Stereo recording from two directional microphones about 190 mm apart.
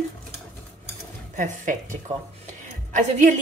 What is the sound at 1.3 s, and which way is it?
A woman's voice, 40° right (ahead or behind).